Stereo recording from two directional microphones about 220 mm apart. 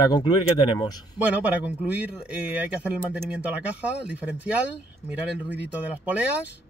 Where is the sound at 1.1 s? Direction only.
5° right (ahead or behind).